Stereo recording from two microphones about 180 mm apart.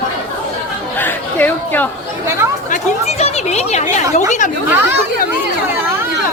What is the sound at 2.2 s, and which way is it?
Chatter, 15° right (ahead or behind).